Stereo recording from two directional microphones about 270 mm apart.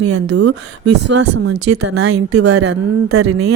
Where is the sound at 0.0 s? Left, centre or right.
Right.